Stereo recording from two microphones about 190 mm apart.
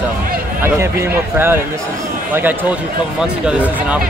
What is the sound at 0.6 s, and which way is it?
Speech, 15° right (ahead or behind).